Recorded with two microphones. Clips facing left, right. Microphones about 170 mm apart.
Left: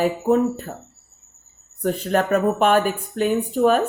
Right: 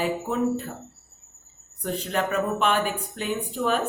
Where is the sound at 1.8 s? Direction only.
50° left (ahead or behind).